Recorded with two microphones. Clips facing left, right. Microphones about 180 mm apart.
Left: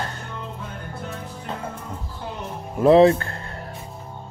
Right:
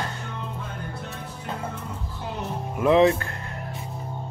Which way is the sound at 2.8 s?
35° left (ahead or behind).